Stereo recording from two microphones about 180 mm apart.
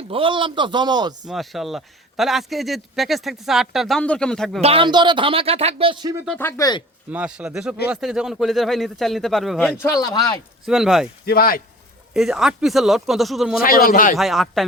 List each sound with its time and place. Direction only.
0.1 s speech: 30° right (ahead or behind)
1.3 s a man's voice: centre (ahead or behind)
4.6 s speech: 30° right (ahead or behind)
6.2 s speech: 5° left (ahead or behind)
6.6 s speech: 20° left (ahead or behind)
7.1 s a man's voice: 5° right (ahead or behind)
9.8 s speech: 20° left (ahead or behind)
10.7 s a man's voice: centre (ahead or behind)
11.3 s speech: 55° left (ahead or behind)
12.1 s a man's voice: centre (ahead or behind)
13.6 s a man's voice: 50° left (ahead or behind)
14.2 s a man's voice: centre (ahead or behind)